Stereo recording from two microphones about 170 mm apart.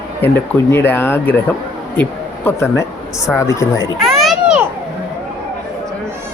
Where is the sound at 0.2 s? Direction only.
15° left (ahead or behind).